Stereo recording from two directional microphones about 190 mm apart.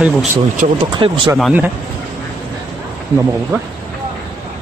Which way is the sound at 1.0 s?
25° right (ahead or behind).